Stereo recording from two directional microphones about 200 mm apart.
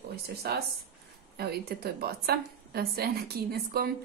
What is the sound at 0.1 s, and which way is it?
A woman's voice, 50° right (ahead or behind).